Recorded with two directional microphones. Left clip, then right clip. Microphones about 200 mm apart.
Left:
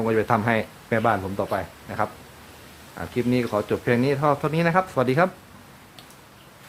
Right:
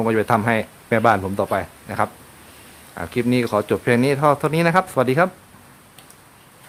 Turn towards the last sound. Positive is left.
turn(degrees=-30)  # may be behind; listen again after turning